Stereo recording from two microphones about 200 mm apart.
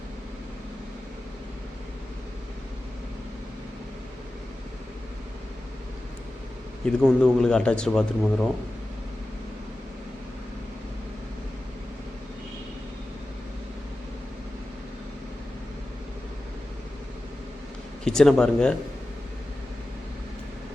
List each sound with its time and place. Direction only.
6.8 s speech: centre (ahead or behind)
18.0 s speech: 5° left (ahead or behind)